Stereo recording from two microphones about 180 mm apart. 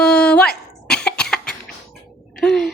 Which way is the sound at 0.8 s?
5° left (ahead or behind).